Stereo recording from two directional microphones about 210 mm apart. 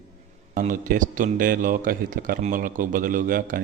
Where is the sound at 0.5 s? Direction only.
40° right (ahead or behind).